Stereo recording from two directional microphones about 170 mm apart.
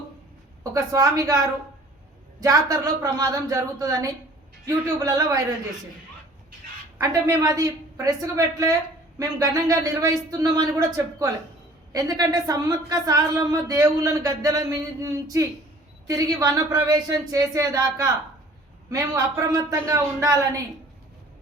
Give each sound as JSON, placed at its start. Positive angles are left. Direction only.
{"t": 0.6, "sound": "a woman's voice", "side_deg": -20}
{"t": 2.4, "sound": "a woman's voice", "side_deg": -20}
{"t": 7.0, "sound": "a woman's voice", "side_deg": -20}